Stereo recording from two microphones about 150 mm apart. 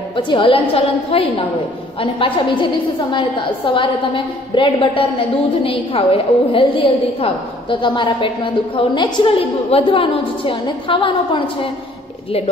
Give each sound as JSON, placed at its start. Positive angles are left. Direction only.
{"t": 0.1, "sound": "a woman's voice", "side_deg": 35}